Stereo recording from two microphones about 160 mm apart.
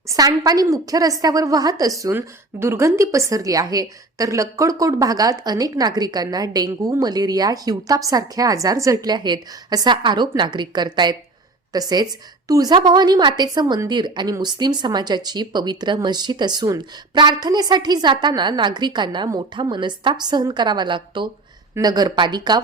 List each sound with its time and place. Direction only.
0.1 s a woman's voice: 25° right (ahead or behind)